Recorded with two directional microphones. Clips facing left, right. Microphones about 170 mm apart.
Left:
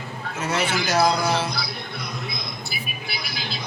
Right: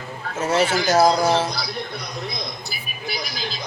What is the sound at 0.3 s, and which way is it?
Speech, 40° right (ahead or behind).